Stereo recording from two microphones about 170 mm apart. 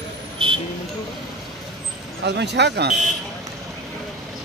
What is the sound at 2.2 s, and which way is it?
Speech, 90° right.